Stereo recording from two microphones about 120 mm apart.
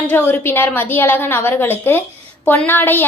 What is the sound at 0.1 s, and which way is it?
A woman's voice, 15° left (ahead or behind).